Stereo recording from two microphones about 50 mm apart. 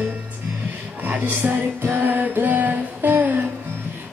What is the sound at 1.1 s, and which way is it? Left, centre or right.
Music, right.